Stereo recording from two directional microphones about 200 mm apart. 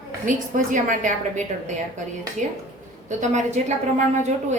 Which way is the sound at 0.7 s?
40° right (ahead or behind).